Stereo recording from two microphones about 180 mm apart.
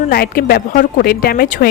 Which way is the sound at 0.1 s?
55° left (ahead or behind).